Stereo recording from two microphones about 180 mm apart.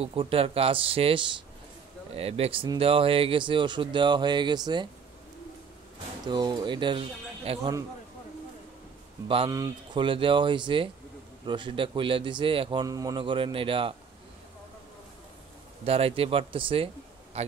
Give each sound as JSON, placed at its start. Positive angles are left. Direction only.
{"t": 0.0, "sound": "speech", "side_deg": -30}
{"t": 6.2, "sound": "speech", "side_deg": -25}
{"t": 9.5, "sound": "speech", "side_deg": -20}
{"t": 15.8, "sound": "speech", "side_deg": -35}